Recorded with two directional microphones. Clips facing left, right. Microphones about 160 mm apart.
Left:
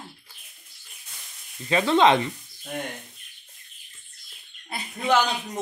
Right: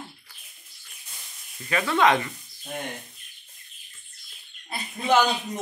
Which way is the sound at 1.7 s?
25° left (ahead or behind).